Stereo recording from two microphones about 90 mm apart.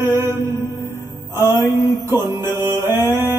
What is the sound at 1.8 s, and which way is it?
Music, 30° right (ahead or behind).